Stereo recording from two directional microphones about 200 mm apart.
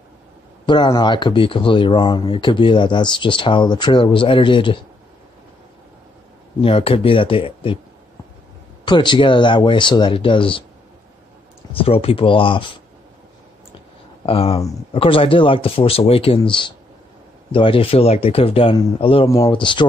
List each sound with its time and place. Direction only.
0.7 s speech: 20° left (ahead or behind)
6.6 s speech: 30° left (ahead or behind)
8.8 s speech: 25° left (ahead or behind)
11.7 s speech: 30° left (ahead or behind)
14.2 s speech: 30° left (ahead or behind)